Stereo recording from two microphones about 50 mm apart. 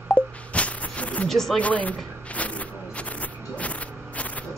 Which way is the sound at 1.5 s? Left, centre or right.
Left.